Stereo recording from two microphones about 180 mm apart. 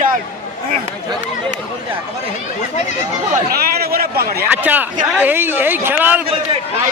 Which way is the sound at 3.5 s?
60° right (ahead or behind).